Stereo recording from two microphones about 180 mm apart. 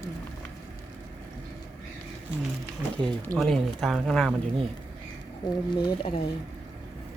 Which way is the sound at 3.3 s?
Centre (ahead or behind).